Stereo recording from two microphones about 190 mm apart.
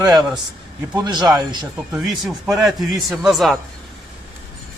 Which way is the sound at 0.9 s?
20° right (ahead or behind).